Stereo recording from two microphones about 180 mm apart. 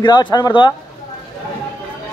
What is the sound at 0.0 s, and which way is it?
Speech, 25° left (ahead or behind).